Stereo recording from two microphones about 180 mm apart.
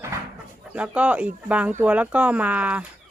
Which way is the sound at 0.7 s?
5° right (ahead or behind).